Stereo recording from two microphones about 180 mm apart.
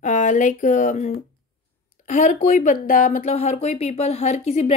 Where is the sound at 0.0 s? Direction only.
45° left (ahead or behind).